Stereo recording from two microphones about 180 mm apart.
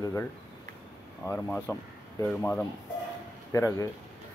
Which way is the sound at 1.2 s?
10° left (ahead or behind).